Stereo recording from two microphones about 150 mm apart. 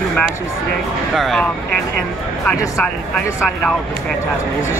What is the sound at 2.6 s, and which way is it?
Speech, 20° left (ahead or behind).